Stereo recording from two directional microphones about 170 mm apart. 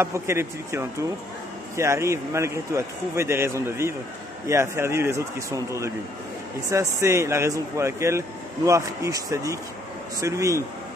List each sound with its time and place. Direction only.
0.0 s a man's voice: 15° right (ahead or behind)